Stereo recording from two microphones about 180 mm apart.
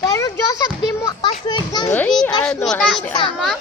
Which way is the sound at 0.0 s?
15° left (ahead or behind).